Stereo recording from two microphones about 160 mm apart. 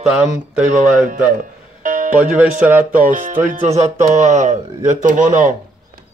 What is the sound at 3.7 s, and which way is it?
Music, 40° right (ahead or behind).